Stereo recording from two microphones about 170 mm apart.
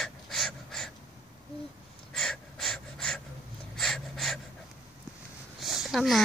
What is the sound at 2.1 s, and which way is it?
Gasp, 5° left (ahead or behind).